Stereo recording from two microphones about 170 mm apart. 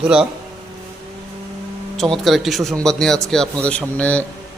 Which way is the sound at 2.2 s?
Centre (ahead or behind).